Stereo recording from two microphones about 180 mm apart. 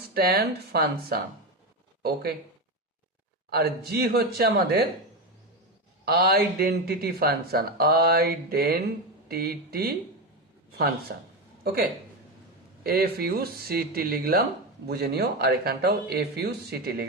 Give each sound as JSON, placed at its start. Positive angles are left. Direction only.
{"t": 0.1, "sound": "speech", "side_deg": -60}
{"t": 3.5, "sound": "speech", "side_deg": -60}
{"t": 6.1, "sound": "speech", "side_deg": -60}
{"t": 10.7, "sound": "a sound", "side_deg": -60}
{"t": 12.8, "sound": "speech", "side_deg": -60}